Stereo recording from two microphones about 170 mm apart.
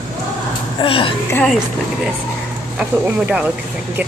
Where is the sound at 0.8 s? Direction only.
30° left (ahead or behind).